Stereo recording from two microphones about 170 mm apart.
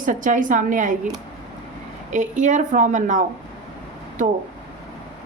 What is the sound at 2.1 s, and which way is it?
A woman's voice, 45° right (ahead or behind).